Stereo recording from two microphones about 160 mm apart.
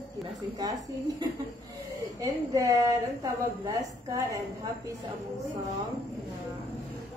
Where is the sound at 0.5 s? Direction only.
25° right (ahead or behind).